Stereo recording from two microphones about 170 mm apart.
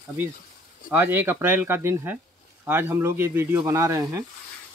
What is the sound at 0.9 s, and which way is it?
Speech, 15° right (ahead or behind).